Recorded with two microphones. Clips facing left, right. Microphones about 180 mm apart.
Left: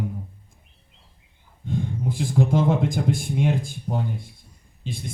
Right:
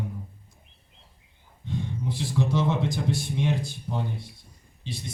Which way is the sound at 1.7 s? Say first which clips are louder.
Left 4 dB; 50° left (ahead or behind).